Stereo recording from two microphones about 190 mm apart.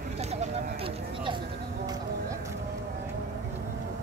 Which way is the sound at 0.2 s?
35° right (ahead or behind).